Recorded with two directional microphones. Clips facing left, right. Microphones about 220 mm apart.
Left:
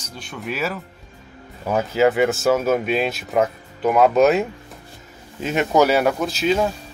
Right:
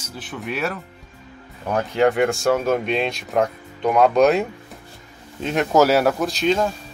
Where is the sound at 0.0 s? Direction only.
Centre (ahead or behind).